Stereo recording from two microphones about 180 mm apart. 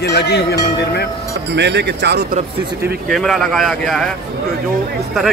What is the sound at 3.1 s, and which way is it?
Speech, centre (ahead or behind).